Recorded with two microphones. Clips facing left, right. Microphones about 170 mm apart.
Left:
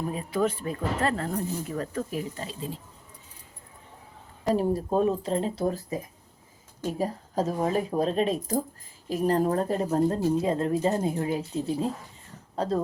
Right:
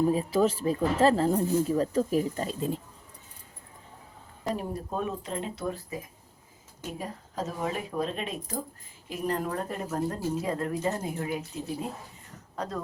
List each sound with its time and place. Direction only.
0.1 s speech: 30° right (ahead or behind); by 2.8 s 50° right (ahead or behind)
4.5 s a woman's voice: 35° left (ahead or behind)